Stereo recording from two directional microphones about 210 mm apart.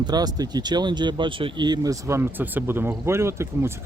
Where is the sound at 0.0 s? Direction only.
20° right (ahead or behind).